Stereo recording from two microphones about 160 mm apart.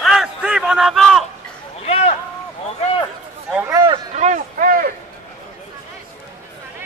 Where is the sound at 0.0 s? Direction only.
5° right (ahead or behind).